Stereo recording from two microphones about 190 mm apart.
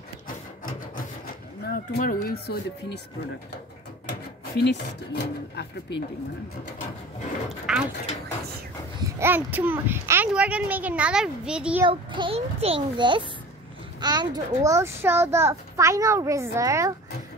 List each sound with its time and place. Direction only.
0.7 s a sound: 50° left (ahead or behind)
4.1 s speech: 60° left (ahead or behind)
7.7 s speech: 5° right (ahead or behind)
9.2 s a child's voice: 10° right (ahead or behind)
11.9 s a child's voice: 25° right (ahead or behind)